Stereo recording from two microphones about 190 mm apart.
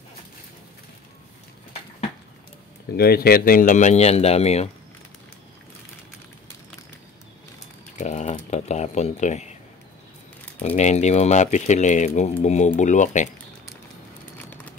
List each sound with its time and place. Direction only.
2.9 s speech: 55° left (ahead or behind); by 4.6 s 35° left (ahead or behind)
8.0 s a sound: 35° left (ahead or behind)
10.8 s speech: 35° left (ahead or behind)